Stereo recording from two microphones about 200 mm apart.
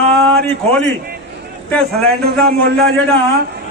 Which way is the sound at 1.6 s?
5° left (ahead or behind).